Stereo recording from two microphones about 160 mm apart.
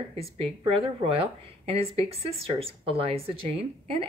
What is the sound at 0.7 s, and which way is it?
Speech, 35° right (ahead or behind).